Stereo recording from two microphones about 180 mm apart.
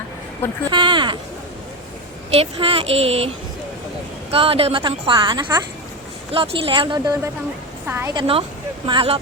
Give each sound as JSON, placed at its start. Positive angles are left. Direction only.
{"t": 0.7, "sound": "a woman's voice", "side_deg": -25}
{"t": 2.3, "sound": "a woman's voice", "side_deg": -35}
{"t": 7.9, "sound": "a woman's voice", "side_deg": -15}
{"t": 8.1, "sound": "a woman's voice", "side_deg": -30}